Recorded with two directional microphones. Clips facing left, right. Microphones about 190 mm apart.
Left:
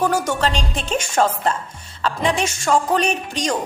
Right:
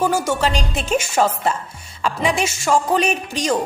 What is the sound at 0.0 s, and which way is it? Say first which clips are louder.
A woman's voice: right 1 dB; 10° right (ahead or behind).